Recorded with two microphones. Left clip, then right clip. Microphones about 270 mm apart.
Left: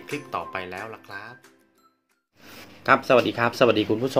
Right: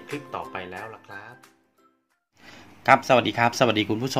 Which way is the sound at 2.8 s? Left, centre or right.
Right.